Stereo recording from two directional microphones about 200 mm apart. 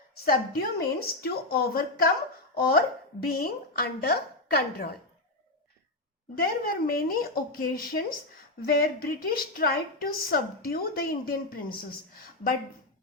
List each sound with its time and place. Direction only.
0.3 s a woman's voice: 50° left (ahead or behind)
6.3 s a woman's voice: 45° left (ahead or behind)